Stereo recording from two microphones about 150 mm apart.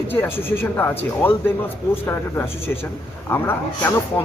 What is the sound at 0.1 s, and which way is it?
Speech, 15° left (ahead or behind).